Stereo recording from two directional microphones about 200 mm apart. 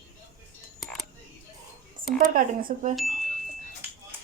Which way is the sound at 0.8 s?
Centre (ahead or behind).